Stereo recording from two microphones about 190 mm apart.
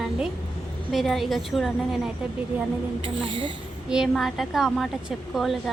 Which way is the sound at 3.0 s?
30° right (ahead or behind).